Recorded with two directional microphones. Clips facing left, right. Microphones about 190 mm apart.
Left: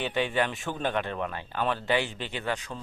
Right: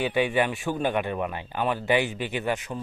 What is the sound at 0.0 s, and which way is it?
Speech, 10° right (ahead or behind).